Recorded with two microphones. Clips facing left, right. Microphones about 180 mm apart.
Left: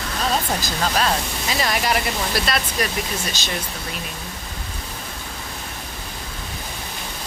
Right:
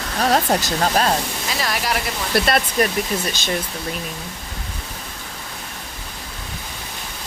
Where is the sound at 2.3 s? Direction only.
50° right (ahead or behind).